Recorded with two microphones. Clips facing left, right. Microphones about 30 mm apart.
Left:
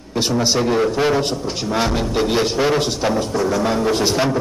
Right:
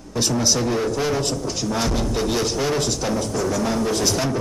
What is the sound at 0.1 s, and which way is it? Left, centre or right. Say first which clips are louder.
A man's voice: left 3 dB; left.